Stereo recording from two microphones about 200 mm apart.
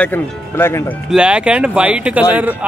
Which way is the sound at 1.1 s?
5° right (ahead or behind).